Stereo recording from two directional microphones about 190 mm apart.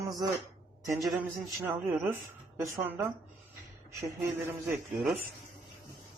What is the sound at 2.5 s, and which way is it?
Speech, 10° right (ahead or behind).